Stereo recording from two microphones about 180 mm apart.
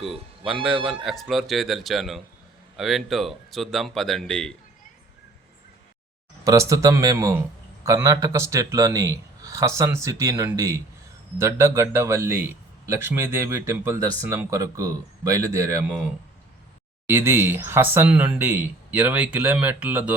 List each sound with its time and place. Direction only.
0.0 s a man's voice: centre (ahead or behind)
6.4 s a man's voice: 20° right (ahead or behind)
17.1 s a man's voice: 15° right (ahead or behind)